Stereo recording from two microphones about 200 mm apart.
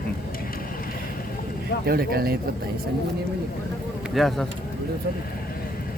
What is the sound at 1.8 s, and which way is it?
Speech, 50° right (ahead or behind).